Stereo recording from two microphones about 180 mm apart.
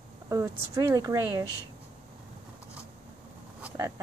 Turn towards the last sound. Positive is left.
turn(degrees=-10)  # may be behind; listen again after turning